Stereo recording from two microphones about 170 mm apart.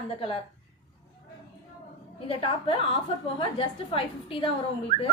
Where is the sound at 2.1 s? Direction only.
30° left (ahead or behind).